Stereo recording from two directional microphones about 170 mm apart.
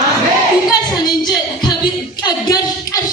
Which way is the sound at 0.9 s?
25° left (ahead or behind).